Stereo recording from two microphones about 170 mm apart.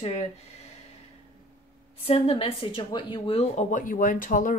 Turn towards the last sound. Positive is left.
turn(degrees=50)  # may be behind; listen again after turning